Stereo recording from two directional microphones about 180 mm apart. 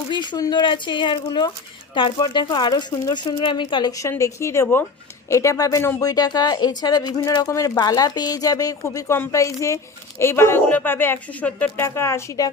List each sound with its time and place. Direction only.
0.1 s speech: 25° left (ahead or behind)